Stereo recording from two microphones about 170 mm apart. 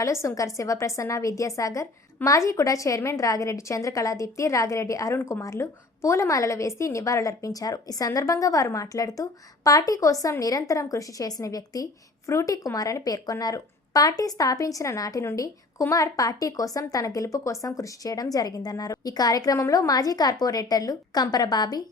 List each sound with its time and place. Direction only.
0.0 s a woman's voice: 15° left (ahead or behind)